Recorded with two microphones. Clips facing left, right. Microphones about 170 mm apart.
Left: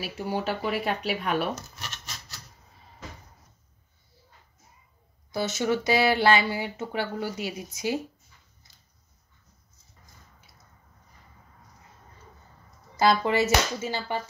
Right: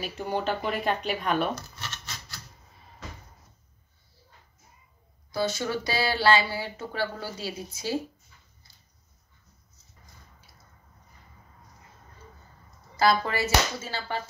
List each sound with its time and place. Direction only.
0.0 s speech: 5° left (ahead or behind)
5.3 s speech: 20° left (ahead or behind)
12.9 s speech: 20° left (ahead or behind)